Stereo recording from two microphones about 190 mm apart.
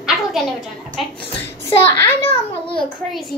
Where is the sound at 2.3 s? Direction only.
25° left (ahead or behind).